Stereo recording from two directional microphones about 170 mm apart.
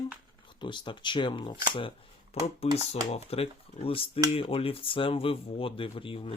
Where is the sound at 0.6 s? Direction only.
30° left (ahead or behind).